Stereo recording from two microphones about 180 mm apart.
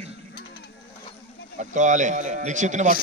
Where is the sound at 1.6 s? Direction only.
45° right (ahead or behind).